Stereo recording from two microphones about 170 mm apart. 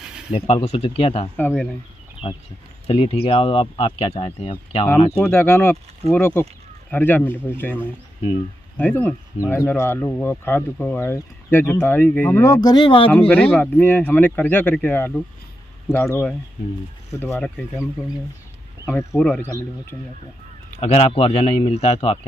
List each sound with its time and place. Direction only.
0.3 s speech: 35° left (ahead or behind)
1.3 s speech: 5° left (ahead or behind)
2.2 s speech: 30° left (ahead or behind)
5.2 s speech: 15° left (ahead or behind)
8.7 s speech: 10° left (ahead or behind); by 13.1 s 30° left (ahead or behind)
13.3 s speech: 10° left (ahead or behind)
19.1 s speech: 5° left (ahead or behind)
20.8 s speech: 35° left (ahead or behind)